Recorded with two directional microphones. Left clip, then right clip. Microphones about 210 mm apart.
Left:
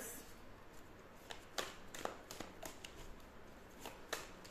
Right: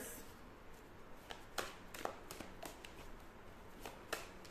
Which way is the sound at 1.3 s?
5° right (ahead or behind).